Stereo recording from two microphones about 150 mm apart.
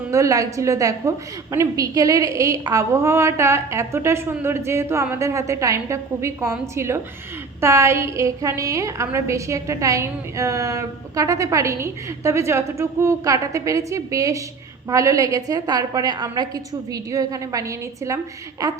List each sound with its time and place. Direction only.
0.1 s a woman's voice: 20° right (ahead or behind)